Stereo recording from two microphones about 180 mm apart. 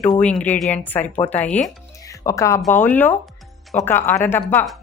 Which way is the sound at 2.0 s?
20° left (ahead or behind).